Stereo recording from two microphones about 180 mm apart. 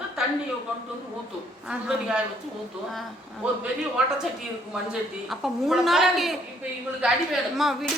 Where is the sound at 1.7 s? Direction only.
5° right (ahead or behind).